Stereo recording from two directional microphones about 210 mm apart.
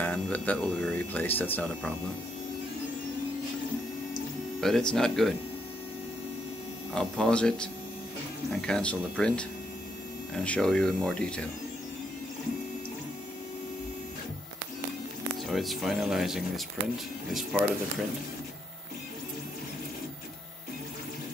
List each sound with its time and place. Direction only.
0.0 s speech: 5° left (ahead or behind)
4.6 s speech: centre (ahead or behind)
6.9 s speech: 5° left (ahead or behind)
15.4 s speech: centre (ahead or behind)